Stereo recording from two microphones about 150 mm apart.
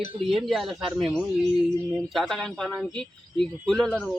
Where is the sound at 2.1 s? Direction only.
Centre (ahead or behind).